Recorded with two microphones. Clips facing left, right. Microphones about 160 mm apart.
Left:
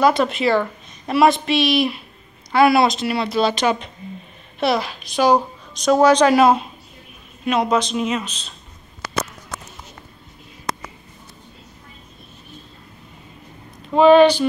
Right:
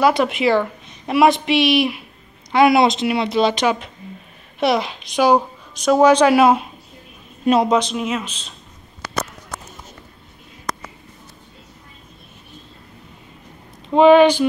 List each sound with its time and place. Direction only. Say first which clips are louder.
0.0 s a woman's voice: right 1 dB; 15° right (ahead or behind)
7.6 s a woman's voice: right 2 dB; 15° right (ahead or behind)
7.9 s speech: left 1 dB; 5° right (ahead or behind)
13.8 s a woman's voice: right 1 dB; 20° right (ahead or behind)